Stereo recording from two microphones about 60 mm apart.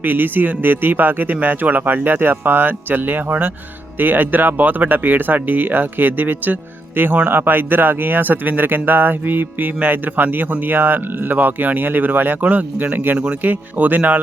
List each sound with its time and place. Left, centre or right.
0.0 s speech: right